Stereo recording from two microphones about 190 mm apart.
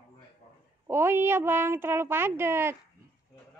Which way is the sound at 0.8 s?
15° right (ahead or behind).